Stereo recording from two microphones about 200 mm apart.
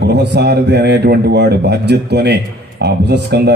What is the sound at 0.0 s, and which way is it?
A man's voice, 60° right (ahead or behind).